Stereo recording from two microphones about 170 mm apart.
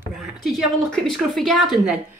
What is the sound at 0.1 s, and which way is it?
Speech, 5° right (ahead or behind).